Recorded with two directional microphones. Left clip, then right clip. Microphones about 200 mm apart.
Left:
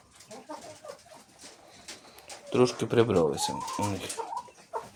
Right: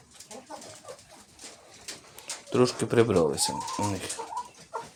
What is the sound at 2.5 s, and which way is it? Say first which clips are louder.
Speech: right 1 dB; 10° right (ahead or behind).